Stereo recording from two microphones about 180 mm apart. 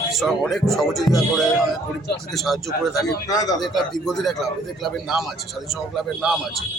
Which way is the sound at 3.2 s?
20° left (ahead or behind).